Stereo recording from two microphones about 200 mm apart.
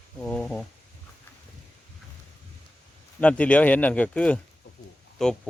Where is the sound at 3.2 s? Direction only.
5° left (ahead or behind).